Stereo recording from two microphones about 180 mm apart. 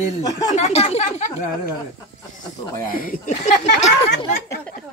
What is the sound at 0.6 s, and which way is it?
Speech, 40° left (ahead or behind).